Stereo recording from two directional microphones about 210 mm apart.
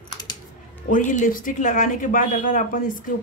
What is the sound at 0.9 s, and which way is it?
A woman's voice, 35° left (ahead or behind).